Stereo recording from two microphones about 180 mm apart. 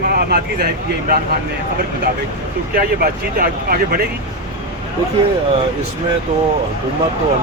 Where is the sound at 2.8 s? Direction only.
55° right (ahead or behind).